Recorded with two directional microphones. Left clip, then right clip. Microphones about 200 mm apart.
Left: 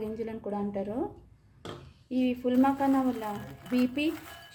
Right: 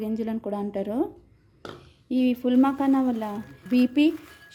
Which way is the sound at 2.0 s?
55° right (ahead or behind).